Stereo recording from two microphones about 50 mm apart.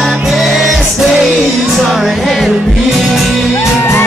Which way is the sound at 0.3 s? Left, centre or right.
Centre.